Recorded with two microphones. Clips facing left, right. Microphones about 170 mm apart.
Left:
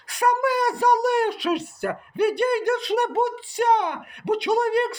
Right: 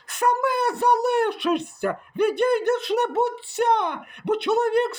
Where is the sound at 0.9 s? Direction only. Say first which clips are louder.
Even; 60° right (ahead or behind).